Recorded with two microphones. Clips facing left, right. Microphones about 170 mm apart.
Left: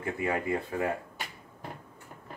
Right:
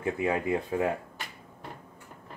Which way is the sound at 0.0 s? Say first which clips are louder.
Right 3 dB; 20° right (ahead or behind).